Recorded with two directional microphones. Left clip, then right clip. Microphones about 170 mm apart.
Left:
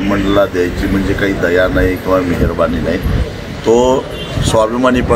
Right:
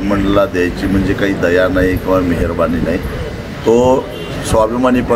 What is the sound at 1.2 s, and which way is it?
Speech, 15° right (ahead or behind).